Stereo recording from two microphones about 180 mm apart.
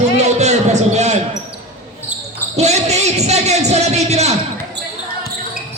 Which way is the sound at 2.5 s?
35° right (ahead or behind).